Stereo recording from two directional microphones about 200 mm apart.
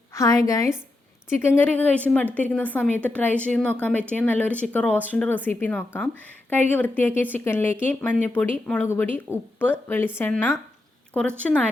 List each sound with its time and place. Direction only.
0.1 s speech: 15° left (ahead or behind)